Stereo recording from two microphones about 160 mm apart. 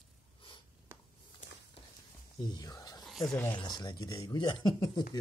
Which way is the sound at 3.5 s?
25° left (ahead or behind).